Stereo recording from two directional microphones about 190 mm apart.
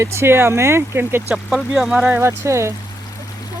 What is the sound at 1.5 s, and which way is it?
Speech, centre (ahead or behind).